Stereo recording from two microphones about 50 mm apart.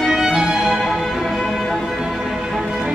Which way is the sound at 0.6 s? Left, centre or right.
Centre.